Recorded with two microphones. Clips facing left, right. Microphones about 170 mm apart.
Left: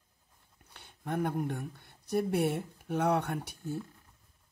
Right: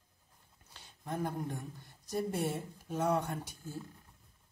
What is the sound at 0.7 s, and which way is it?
Speech, 60° left (ahead or behind).